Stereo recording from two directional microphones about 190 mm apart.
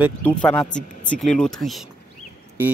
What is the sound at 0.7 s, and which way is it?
Speech, 40° left (ahead or behind).